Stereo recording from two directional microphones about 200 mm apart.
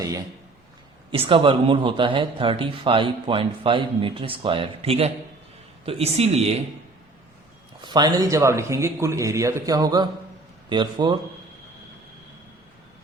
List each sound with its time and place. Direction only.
1.1 s speech: 25° right (ahead or behind)
7.8 s a man's voice: 20° right (ahead or behind)